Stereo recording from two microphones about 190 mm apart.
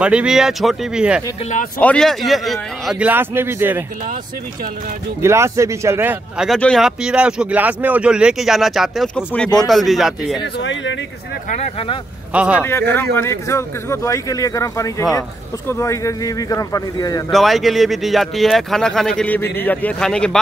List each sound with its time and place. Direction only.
0.0 s speech: 5° right (ahead or behind)
5.2 s speech: 15° right (ahead or behind)
10.6 s speech: 75° left (ahead or behind)
11.4 s speech: 35° left (ahead or behind)
12.3 s a man's voice: 5° right (ahead or behind)
12.9 s a man's voice: 10° left (ahead or behind)
17.3 s speech: centre (ahead or behind)